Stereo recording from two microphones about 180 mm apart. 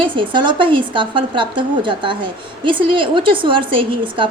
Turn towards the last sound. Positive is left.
turn(degrees=-30)  # may be behind; listen again after turning